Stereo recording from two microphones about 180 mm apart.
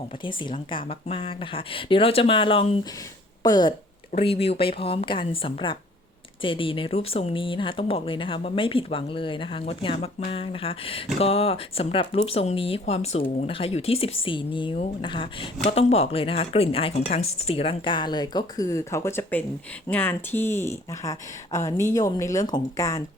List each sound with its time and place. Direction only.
0.3 s speech: 25° left (ahead or behind)